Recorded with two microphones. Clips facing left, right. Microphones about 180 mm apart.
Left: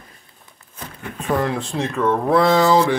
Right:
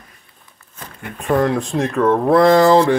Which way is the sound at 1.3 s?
Centre (ahead or behind).